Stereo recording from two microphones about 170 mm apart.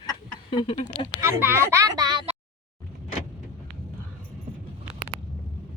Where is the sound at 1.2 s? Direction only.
15° right (ahead or behind).